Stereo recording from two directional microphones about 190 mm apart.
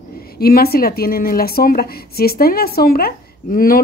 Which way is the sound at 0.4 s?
55° left (ahead or behind).